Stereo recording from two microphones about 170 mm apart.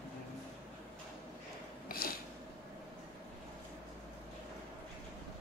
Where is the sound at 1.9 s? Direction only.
60° left (ahead or behind).